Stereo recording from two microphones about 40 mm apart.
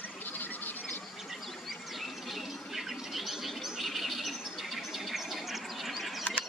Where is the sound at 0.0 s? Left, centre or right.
Left.